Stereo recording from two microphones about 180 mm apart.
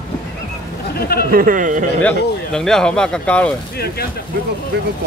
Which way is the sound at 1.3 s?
50° right (ahead or behind).